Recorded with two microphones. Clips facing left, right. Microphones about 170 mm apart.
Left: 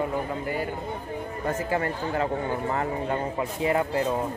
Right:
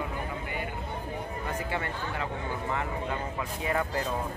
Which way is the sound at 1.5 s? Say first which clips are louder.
Left 7 dB; 40° left (ahead or behind).